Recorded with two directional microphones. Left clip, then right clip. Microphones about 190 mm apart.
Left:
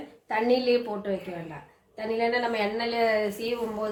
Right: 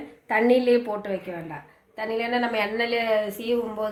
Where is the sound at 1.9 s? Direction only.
40° right (ahead or behind).